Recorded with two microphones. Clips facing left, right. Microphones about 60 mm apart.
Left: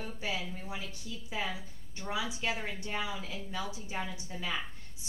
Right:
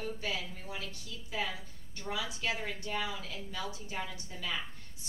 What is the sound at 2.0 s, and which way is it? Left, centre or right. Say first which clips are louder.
A woman's voice: left 2 dB; left.